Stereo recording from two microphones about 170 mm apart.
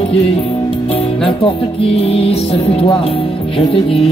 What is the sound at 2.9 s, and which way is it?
Speech, 35° left (ahead or behind).